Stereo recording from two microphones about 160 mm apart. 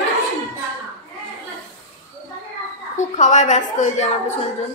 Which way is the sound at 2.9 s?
50° left (ahead or behind).